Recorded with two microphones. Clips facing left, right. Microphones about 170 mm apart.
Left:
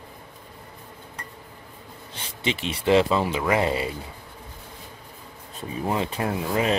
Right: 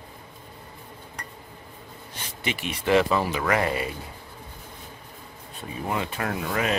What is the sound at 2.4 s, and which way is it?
Speech, 25° left (ahead or behind).